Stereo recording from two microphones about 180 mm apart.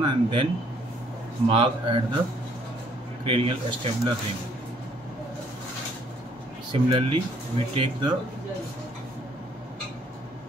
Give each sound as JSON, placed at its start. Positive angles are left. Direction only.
{"t": 0.0, "sound": "speech", "side_deg": -30}
{"t": 1.5, "sound": "speech", "side_deg": -30}
{"t": 3.3, "sound": "speech", "side_deg": -30}
{"t": 6.7, "sound": "speech", "side_deg": -30}